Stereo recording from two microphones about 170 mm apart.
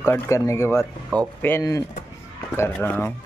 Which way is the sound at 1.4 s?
15° left (ahead or behind).